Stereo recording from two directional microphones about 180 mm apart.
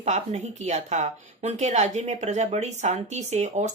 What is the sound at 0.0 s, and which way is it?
A woman's voice, 40° right (ahead or behind).